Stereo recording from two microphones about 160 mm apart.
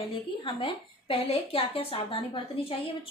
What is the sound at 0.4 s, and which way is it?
A woman's voice, 35° left (ahead or behind).